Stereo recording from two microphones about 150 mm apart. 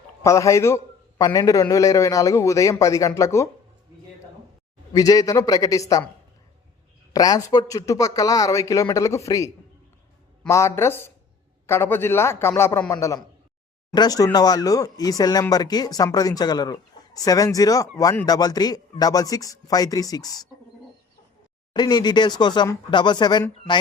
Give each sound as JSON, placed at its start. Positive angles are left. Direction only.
{"t": 0.2, "sound": "speech", "side_deg": 20}
{"t": 4.9, "sound": "speech", "side_deg": 25}
{"t": 7.1, "sound": "speech", "side_deg": 25}
{"t": 10.5, "sound": "a man's voice", "side_deg": 20}
{"t": 21.7, "sound": "speech", "side_deg": 30}